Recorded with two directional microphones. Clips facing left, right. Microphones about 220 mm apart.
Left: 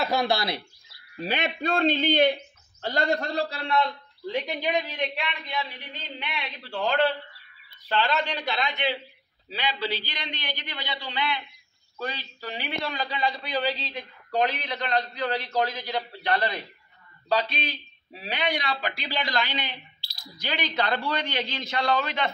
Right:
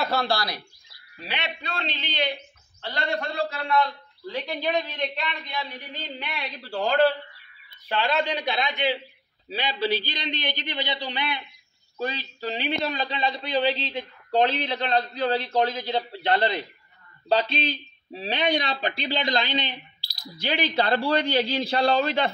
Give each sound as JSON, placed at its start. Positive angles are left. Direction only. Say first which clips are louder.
{"t": 0.1, "sound": "speech", "louder": "left 1 dB", "side_deg": 15}
{"t": 1.1, "sound": "a man's voice", "louder": "left 5 dB", "side_deg": 45}
{"t": 4.3, "sound": "a woman's voice", "louder": "even", "side_deg": 15}
{"t": 6.2, "sound": "speech", "louder": "right 1 dB", "side_deg": -40}
{"t": 7.9, "sound": "a man's voice", "louder": "right 1 dB", "side_deg": -15}
{"t": 20.0, "sound": "speech", "louder": "right 5 dB", "side_deg": -35}